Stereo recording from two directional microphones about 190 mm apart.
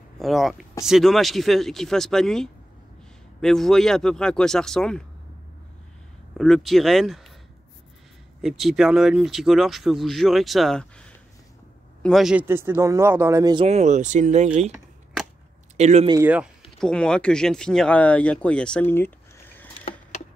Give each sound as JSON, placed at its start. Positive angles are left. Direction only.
{"t": 0.2, "sound": "speech", "side_deg": 0}
{"t": 6.3, "sound": "speech", "side_deg": 0}
{"t": 8.4, "sound": "a man's voice", "side_deg": 0}
{"t": 13.7, "sound": "speech", "side_deg": -35}
{"t": 15.8, "sound": "speech", "side_deg": -35}
{"t": 16.8, "sound": "speech", "side_deg": 5}